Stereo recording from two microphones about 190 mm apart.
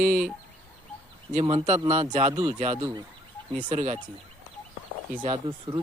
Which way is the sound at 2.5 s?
35° right (ahead or behind).